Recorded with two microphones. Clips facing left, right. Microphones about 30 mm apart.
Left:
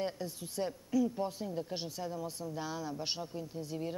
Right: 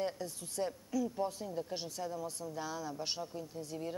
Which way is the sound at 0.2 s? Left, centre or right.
Centre.